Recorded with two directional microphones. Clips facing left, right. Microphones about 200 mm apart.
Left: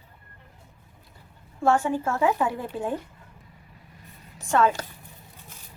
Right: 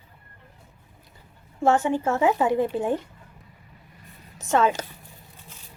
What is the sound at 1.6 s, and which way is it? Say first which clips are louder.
Speech: right 2 dB; 20° right (ahead or behind).